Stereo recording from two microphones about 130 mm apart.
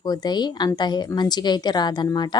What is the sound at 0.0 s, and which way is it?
A woman's voice, 30° left (ahead or behind).